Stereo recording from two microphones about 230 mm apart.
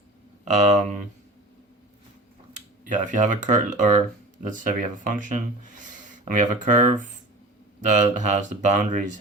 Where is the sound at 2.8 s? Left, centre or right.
Right.